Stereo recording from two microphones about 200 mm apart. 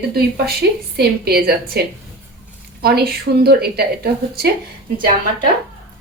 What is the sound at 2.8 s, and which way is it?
A woman's voice, 50° right (ahead or behind).